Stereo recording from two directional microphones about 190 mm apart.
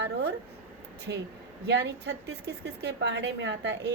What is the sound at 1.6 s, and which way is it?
Speech, 60° right (ahead or behind).